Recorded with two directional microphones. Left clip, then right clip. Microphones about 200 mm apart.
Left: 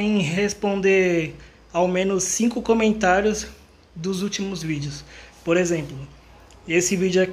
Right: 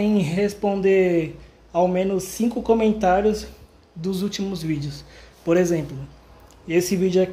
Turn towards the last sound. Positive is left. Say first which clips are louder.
# even
turn(degrees=-5)  # may be behind; listen again after turning